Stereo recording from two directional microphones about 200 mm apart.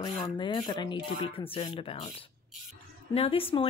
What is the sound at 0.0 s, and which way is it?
Speech, 20° left (ahead or behind).